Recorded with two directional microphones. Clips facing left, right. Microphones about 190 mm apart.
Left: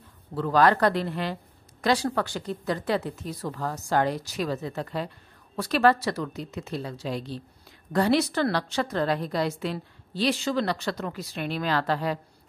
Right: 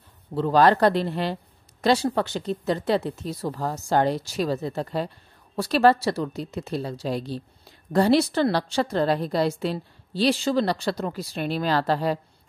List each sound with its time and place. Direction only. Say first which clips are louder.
0.3 s a woman's voice: right 3 dB; 30° right (ahead or behind)